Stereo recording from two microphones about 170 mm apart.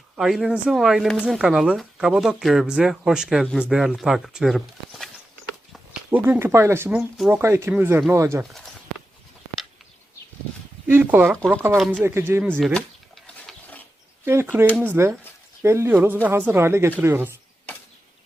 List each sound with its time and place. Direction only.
0.2 s speech: centre (ahead or behind)
3.4 s speech: 10° left (ahead or behind); by 8.4 s 15° right (ahead or behind)
10.8 s speech: 10° right (ahead or behind)
12.5 s a sound: centre (ahead or behind)
14.3 s speech: 15° right (ahead or behind)